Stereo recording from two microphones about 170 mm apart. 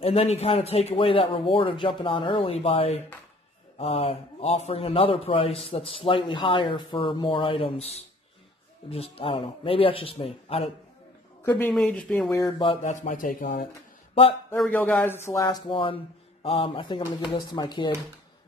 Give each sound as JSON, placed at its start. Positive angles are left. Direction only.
{"t": 0.0, "sound": "a man's voice", "side_deg": 35}
{"t": 11.4, "sound": "speech", "side_deg": 10}
{"t": 12.8, "sound": "speech", "side_deg": 45}
{"t": 14.7, "sound": "a man's voice", "side_deg": 10}